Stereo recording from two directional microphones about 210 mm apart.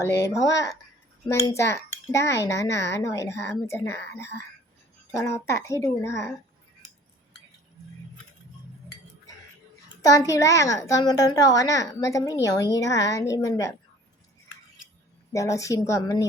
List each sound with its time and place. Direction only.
0.0 s a child's voice: 15° left (ahead or behind)
10.0 s a child's voice: 15° left (ahead or behind)
15.3 s a child's voice: 15° left (ahead or behind)